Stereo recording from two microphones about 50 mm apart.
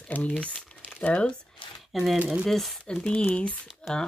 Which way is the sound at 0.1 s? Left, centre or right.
Left.